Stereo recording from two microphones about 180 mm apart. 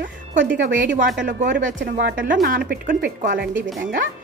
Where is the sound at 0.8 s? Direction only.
45° right (ahead or behind).